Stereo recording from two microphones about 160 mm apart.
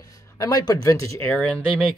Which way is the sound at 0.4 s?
25° left (ahead or behind).